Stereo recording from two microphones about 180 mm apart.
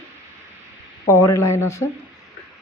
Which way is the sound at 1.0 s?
15° left (ahead or behind).